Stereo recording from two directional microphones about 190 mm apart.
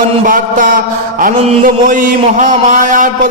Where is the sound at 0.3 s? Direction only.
45° right (ahead or behind).